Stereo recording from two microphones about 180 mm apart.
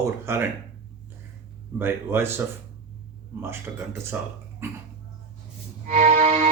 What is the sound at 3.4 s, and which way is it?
Speech, 10° right (ahead or behind).